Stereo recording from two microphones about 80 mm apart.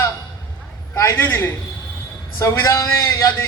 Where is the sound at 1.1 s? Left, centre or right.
Left.